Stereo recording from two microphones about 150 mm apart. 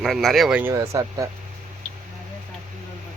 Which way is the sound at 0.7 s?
20° right (ahead or behind).